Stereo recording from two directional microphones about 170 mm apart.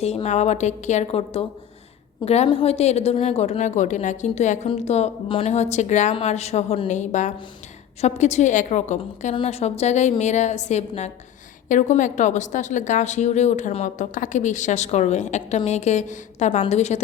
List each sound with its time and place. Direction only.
0.0 s a woman's voice: 40° left (ahead or behind)